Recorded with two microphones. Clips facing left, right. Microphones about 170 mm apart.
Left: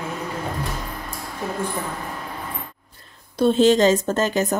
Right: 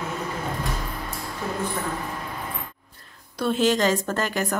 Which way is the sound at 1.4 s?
10° left (ahead or behind).